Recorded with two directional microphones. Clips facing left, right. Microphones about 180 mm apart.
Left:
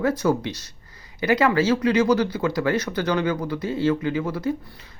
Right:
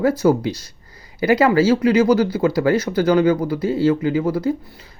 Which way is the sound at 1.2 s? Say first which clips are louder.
Right 5 dB; 30° right (ahead or behind).